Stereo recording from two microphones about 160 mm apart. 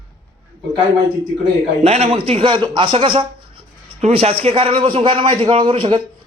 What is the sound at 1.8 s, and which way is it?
A man's voice, 40° right (ahead or behind).